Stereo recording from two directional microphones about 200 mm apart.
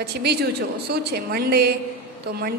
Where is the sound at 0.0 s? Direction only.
55° right (ahead or behind).